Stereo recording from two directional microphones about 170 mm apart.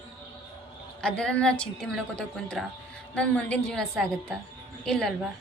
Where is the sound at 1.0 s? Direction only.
5° left (ahead or behind).